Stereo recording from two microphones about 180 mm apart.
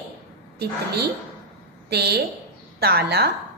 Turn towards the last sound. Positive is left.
turn(degrees=-60)  # may be behind; listen again after turning